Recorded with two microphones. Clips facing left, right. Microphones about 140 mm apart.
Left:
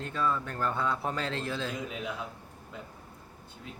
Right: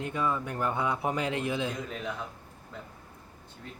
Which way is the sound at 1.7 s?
5° left (ahead or behind).